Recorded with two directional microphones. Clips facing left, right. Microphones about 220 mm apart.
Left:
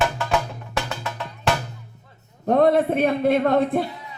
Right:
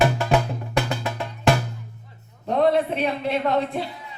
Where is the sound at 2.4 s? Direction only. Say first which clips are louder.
Left 3 dB; 50° left (ahead or behind).